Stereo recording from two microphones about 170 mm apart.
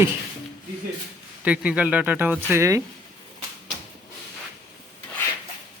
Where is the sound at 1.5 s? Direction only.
10° right (ahead or behind).